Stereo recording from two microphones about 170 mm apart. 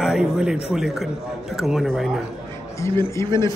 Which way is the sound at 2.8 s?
15° left (ahead or behind).